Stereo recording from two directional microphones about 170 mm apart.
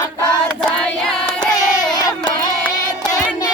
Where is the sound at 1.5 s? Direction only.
20° left (ahead or behind).